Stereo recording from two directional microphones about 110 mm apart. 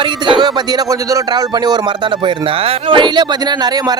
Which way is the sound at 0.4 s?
35° right (ahead or behind).